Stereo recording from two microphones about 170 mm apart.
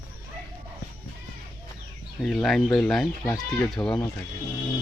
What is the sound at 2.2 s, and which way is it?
Speech, centre (ahead or behind).